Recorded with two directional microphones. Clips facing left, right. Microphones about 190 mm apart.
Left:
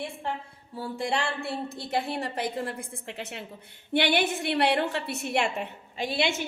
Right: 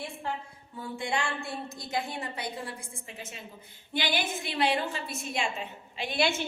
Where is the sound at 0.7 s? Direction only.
35° left (ahead or behind).